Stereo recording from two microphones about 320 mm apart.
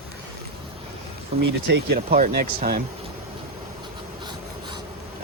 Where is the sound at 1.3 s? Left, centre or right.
Centre.